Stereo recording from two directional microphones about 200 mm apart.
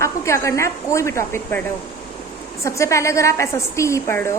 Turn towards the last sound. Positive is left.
turn(degrees=15)  # may be behind; listen again after turning